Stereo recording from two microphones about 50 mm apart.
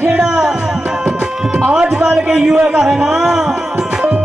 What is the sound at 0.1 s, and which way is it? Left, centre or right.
Music, centre.